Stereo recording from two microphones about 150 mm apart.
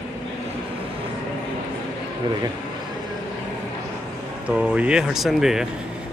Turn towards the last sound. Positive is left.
turn(degrees=-5)  # may be behind; listen again after turning